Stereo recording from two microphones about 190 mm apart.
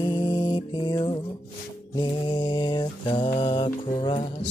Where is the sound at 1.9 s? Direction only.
20° left (ahead or behind).